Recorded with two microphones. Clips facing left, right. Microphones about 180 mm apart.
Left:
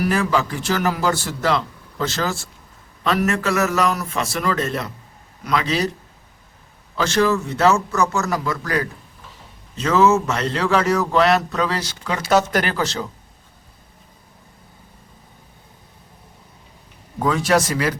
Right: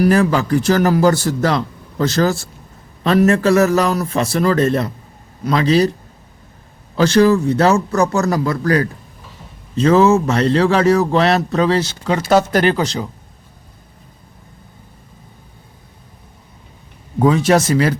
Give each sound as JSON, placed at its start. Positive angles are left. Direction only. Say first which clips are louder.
{"t": 0.0, "sound": "speech", "louder": "right 6 dB", "side_deg": -40}
{"t": 6.9, "sound": "speech", "louder": "right 7 dB", "side_deg": -35}
{"t": 17.2, "sound": "speech", "louder": "right 5 dB", "side_deg": -20}